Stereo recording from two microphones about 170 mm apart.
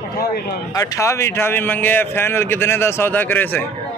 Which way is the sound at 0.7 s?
20° left (ahead or behind).